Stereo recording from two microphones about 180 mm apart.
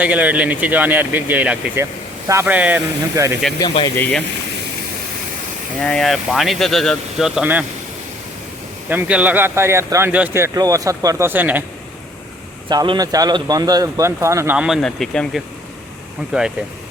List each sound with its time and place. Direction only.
0.0 s speech: 10° right (ahead or behind)
3.6 s speech: 20° left (ahead or behind)
3.9 s speech: 10° left (ahead or behind)
5.8 s speech: 5° left (ahead or behind)
8.9 s speech: 10° right (ahead or behind)
12.6 s speech: 25° right (ahead or behind); by 16.5 s 5° right (ahead or behind)